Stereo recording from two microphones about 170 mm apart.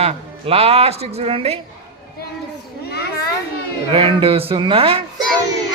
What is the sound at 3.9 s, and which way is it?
A man's voice, 35° right (ahead or behind).